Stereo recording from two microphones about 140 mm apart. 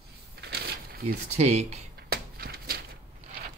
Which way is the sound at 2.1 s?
90° right.